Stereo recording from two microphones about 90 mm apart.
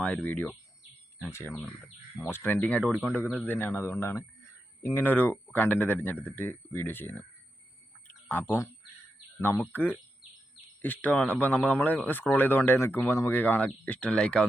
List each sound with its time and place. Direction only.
0.0 s speech: 15° left (ahead or behind)
1.3 s speech: 30° left (ahead or behind)
3.2 s speech: 15° right (ahead or behind)
3.4 s speech: 20° left (ahead or behind)
8.3 s speech: 20° left (ahead or behind)
9.7 s speech: 20° left (ahead or behind)